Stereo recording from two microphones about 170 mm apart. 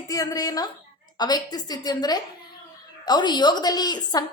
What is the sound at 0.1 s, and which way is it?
A woman's voice, 20° left (ahead or behind).